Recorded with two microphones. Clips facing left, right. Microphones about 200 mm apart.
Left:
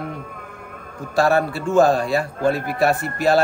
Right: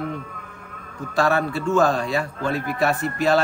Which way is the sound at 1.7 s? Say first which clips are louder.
Left 4 dB; 40° left (ahead or behind).